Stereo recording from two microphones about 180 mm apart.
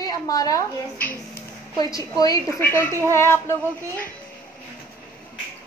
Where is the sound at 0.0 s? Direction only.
20° left (ahead or behind).